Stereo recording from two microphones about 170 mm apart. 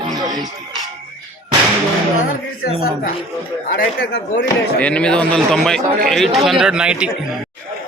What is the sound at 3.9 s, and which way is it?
Speech, 75° left (ahead or behind).